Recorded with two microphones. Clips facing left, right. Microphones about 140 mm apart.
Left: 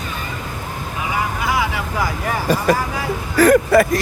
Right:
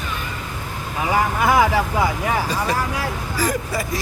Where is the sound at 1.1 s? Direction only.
50° right (ahead or behind).